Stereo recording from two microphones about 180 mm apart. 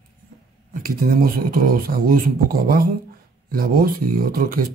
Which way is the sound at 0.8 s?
50° right (ahead or behind).